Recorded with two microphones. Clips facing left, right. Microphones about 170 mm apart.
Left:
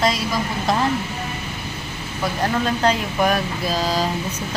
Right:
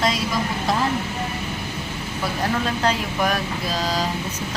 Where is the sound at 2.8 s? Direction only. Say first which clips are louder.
Left 4 dB; 5° left (ahead or behind).